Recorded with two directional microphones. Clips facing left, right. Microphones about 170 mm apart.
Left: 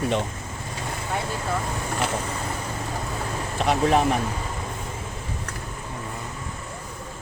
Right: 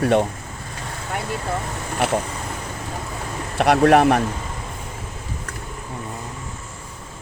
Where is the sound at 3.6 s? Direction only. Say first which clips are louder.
Right 6 dB; 65° right (ahead or behind).